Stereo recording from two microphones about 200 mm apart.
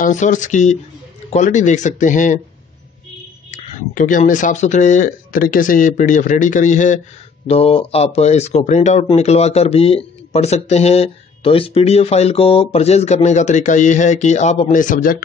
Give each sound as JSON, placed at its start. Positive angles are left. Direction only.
{"t": 0.0, "sound": "speech", "side_deg": 40}
{"t": 3.5, "sound": "speech", "side_deg": 40}